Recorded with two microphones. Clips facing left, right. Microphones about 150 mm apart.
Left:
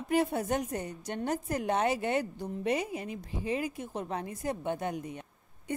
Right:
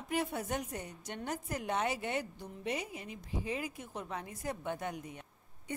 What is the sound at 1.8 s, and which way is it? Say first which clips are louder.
Speech: left 6 dB; 65° left (ahead or behind).